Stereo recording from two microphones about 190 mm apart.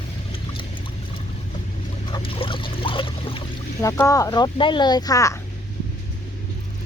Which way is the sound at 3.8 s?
15° left (ahead or behind).